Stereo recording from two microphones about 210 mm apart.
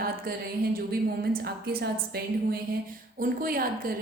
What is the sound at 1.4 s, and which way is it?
Speech, 50° right (ahead or behind).